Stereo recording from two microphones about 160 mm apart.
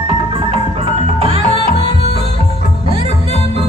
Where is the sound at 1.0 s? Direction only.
35° right (ahead or behind).